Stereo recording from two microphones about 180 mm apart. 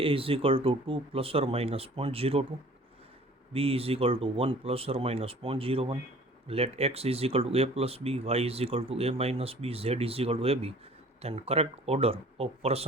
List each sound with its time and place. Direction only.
0.0 s speech: 30° right (ahead or behind)
3.5 s speech: 30° right (ahead or behind)